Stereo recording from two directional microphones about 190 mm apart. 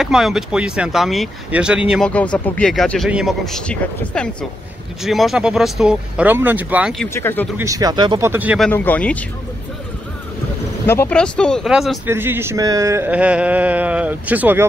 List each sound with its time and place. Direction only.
0.0 s speech: centre (ahead or behind)
7.2 s speech: 10° left (ahead or behind)
7.5 s speech: 15° right (ahead or behind)
8.3 s speech: 10° right (ahead or behind)
8.6 s speech: 10° left (ahead or behind)
10.9 s speech: 10° left (ahead or behind)
12.1 s speech: 10° right (ahead or behind)